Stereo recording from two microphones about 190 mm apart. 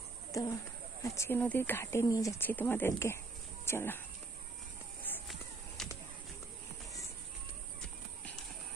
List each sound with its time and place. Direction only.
0.3 s speech: 20° left (ahead or behind)
5.8 s bird: 5° left (ahead or behind)